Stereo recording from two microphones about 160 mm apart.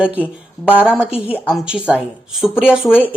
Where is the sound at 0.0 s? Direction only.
10° right (ahead or behind).